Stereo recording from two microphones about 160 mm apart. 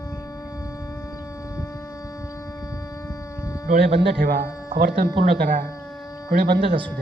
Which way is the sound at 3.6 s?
70° right (ahead or behind).